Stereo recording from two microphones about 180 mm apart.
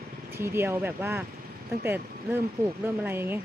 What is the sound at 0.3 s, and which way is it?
Speech, 15° right (ahead or behind).